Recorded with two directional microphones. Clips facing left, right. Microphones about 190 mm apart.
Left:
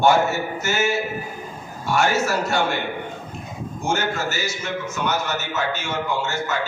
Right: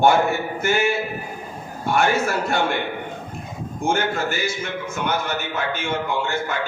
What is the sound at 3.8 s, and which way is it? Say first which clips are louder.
A man's voice: right 2 dB; 55° right (ahead or behind).